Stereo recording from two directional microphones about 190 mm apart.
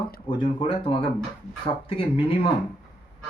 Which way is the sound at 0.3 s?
25° left (ahead or behind).